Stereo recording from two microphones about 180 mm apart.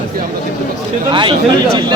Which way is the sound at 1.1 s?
25° right (ahead or behind).